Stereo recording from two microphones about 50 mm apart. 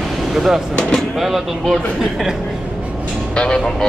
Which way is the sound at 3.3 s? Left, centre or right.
Centre.